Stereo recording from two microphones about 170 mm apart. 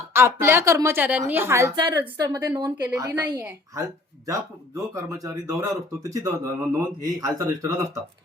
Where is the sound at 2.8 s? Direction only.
10° right (ahead or behind).